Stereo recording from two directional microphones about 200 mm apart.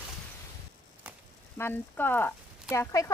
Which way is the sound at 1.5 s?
10° left (ahead or behind).